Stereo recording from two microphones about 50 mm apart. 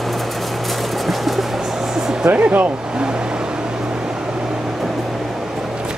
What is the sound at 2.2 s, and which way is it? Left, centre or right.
Speech, right.